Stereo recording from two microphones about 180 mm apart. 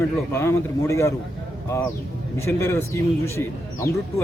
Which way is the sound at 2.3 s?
15° left (ahead or behind).